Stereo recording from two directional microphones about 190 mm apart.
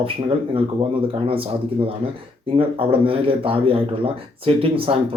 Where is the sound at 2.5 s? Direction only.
30° right (ahead or behind).